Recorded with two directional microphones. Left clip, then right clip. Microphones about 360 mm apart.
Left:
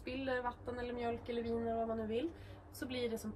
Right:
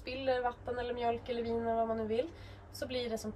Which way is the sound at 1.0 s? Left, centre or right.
Centre.